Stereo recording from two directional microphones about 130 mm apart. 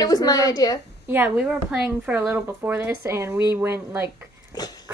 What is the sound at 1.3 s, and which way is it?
Speech, 5° right (ahead or behind).